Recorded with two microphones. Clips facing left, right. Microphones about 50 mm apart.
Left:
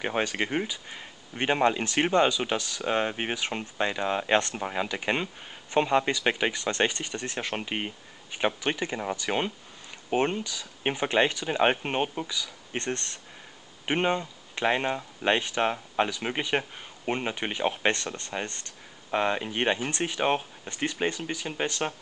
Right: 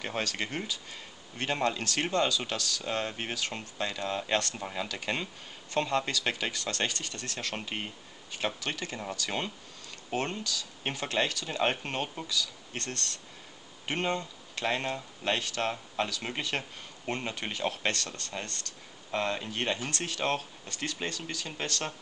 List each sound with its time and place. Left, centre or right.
0.0 s speech: left